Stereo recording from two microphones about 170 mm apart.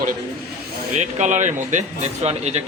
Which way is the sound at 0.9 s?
45° right (ahead or behind).